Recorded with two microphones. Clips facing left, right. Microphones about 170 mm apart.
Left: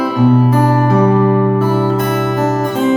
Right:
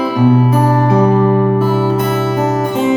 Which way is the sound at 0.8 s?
20° right (ahead or behind).